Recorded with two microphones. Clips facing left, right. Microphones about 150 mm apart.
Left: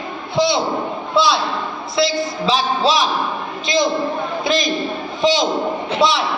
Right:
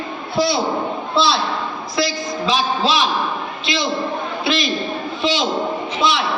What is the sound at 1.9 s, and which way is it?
A man's voice, 30° left (ahead or behind).